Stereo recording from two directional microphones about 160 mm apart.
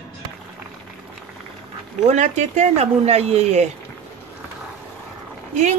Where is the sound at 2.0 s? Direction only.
45° right (ahead or behind).